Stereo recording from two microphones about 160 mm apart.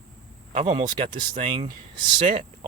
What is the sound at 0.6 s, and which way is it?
Speech, 30° right (ahead or behind).